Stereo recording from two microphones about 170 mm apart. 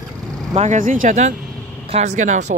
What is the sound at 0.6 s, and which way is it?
Speech, 45° right (ahead or behind).